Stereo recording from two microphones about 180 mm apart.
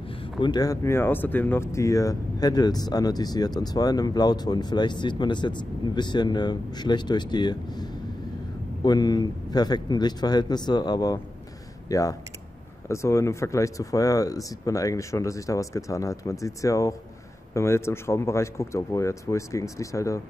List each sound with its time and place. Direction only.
0.2 s speech: 25° left (ahead or behind)